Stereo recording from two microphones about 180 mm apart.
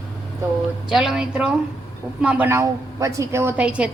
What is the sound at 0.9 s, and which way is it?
A woman's voice, 5° right (ahead or behind).